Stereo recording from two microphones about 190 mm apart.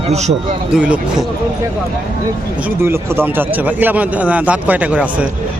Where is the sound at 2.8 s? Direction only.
15° right (ahead or behind).